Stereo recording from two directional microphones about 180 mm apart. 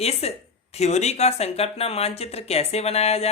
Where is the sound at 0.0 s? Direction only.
35° left (ahead or behind).